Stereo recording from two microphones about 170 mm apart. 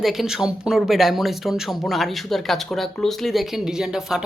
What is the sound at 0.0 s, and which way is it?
Speech, centre (ahead or behind).